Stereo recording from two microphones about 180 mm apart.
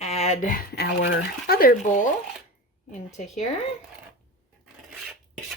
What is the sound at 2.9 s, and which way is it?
Speech, 40° left (ahead or behind).